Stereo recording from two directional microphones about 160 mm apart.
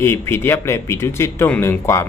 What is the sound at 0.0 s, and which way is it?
Speech, 15° left (ahead or behind).